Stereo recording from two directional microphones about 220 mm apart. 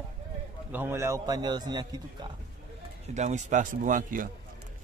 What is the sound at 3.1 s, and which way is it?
Speech, 30° right (ahead or behind).